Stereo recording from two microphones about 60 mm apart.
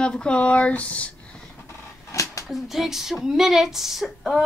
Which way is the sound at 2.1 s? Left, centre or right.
Left.